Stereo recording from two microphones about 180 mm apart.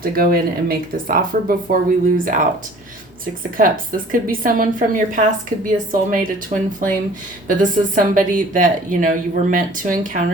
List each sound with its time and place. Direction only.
0.0 s speech: 55° right (ahead or behind)
3.6 s speech: 50° right (ahead or behind)